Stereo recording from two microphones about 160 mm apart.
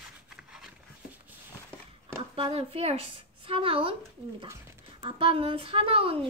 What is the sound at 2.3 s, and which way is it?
Speech, 35° right (ahead or behind).